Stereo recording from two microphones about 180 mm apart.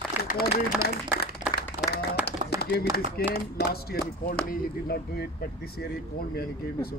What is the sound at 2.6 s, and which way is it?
Speech, 60° left (ahead or behind).